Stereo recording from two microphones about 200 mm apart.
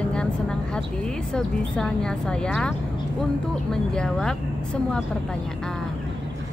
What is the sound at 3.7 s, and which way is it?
A woman's voice, 5° left (ahead or behind).